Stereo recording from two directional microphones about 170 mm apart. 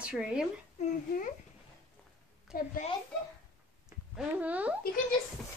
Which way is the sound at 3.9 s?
5° right (ahead or behind).